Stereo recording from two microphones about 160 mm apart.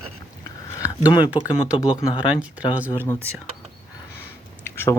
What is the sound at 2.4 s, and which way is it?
Speech, 10° right (ahead or behind).